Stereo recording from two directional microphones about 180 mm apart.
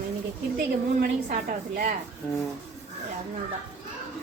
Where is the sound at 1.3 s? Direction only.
55° right (ahead or behind).